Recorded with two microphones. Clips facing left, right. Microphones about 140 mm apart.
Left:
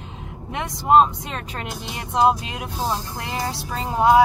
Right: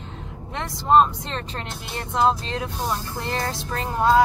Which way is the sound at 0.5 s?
20° left (ahead or behind).